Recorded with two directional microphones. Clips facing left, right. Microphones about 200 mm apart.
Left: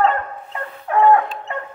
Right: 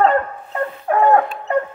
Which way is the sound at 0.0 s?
40° right (ahead or behind).